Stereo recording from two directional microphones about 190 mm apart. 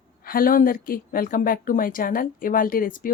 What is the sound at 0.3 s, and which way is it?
A woman's voice, 50° left (ahead or behind).